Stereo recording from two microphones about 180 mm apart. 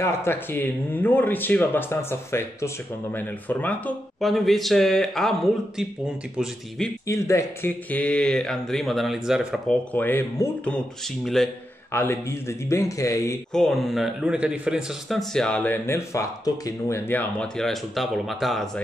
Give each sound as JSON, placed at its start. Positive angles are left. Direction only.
{"t": 0.0, "sound": "speech", "side_deg": 15}
{"t": 7.1, "sound": "speech", "side_deg": 15}
{"t": 9.9, "sound": "speech", "side_deg": 10}
{"t": 11.9, "sound": "speech", "side_deg": 10}
{"t": 13.5, "sound": "speech", "side_deg": 0}